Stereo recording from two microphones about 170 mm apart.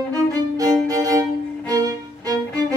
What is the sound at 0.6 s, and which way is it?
Violin, 20° right (ahead or behind).